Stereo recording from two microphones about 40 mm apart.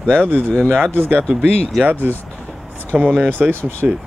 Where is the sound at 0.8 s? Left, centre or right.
Right.